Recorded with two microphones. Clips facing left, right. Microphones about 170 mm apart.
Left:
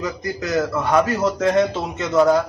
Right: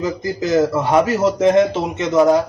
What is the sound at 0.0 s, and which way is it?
Speech, 25° right (ahead or behind).